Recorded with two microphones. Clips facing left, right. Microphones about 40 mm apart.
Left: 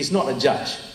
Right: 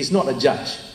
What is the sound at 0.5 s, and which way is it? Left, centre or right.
Speech, left.